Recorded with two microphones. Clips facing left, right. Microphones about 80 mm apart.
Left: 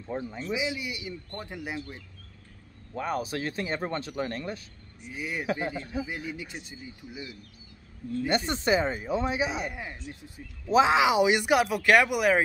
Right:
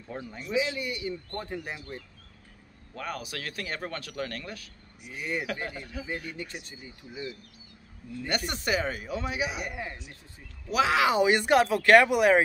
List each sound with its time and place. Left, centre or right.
0.1 s speech: centre
2.9 s speech: left
5.1 s speech: centre
5.5 s speech: left
6.0 s speech: centre
8.3 s speech: left
10.7 s speech: left
11.1 s speech: centre